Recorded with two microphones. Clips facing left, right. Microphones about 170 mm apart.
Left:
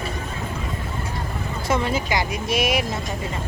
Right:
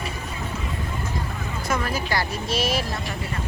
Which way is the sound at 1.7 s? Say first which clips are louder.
Left 3 dB; 25° left (ahead or behind).